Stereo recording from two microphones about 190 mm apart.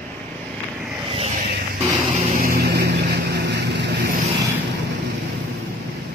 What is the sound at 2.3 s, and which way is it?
Vehicle, 50° right (ahead or behind).